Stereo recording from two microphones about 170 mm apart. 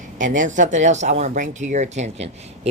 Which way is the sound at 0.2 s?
50° right (ahead or behind).